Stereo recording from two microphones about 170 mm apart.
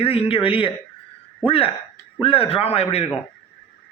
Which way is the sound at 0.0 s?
35° left (ahead or behind).